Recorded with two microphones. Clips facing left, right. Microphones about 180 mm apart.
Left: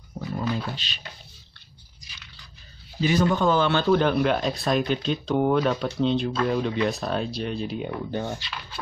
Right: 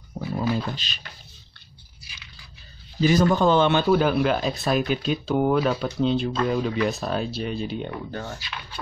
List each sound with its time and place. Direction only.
0.4 s speech: 45° right (ahead or behind)
2.0 s a sound: 5° right (ahead or behind)
3.0 s speech: 40° right (ahead or behind)
3.5 s a man's voice: 20° right (ahead or behind)
3.8 s speech: 5° right (ahead or behind)
8.1 s speech: 15° left (ahead or behind)